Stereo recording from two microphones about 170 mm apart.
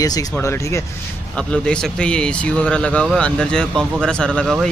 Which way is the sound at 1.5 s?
5° left (ahead or behind).